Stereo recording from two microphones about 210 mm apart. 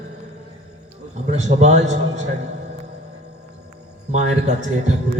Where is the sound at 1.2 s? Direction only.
35° right (ahead or behind).